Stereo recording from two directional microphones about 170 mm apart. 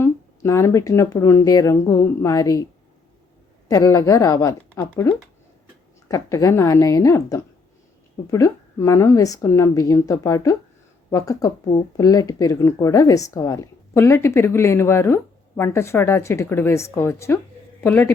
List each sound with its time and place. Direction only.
0.0 s speech: 15° left (ahead or behind)
3.7 s speech: 20° left (ahead or behind)